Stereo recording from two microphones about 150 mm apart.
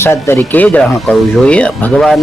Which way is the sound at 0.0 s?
15° left (ahead or behind).